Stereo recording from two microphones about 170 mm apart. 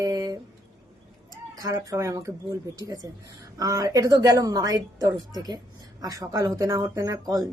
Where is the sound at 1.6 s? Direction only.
20° right (ahead or behind).